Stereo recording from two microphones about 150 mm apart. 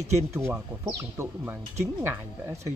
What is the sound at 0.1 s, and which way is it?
Speech, 20° right (ahead or behind).